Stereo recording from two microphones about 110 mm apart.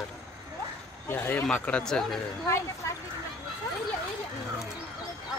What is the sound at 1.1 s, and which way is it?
Speech, 20° left (ahead or behind).